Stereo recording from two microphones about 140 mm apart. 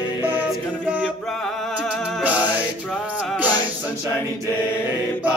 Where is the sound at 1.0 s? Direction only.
5° left (ahead or behind).